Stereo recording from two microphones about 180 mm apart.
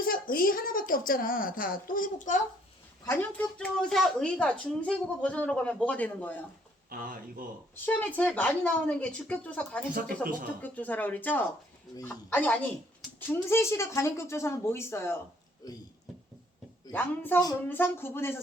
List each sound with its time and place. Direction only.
0.0 s a woman's voice: 55° left (ahead or behind)
3.1 s a woman's voice: 10° left (ahead or behind)
6.9 s speech: 50° right (ahead or behind)
7.9 s a woman's voice: 10° left (ahead or behind)
10.2 s speech: 50° right (ahead or behind)
10.6 s a woman's voice: 10° left (ahead or behind)
16.9 s a woman's voice: 10° left (ahead or behind)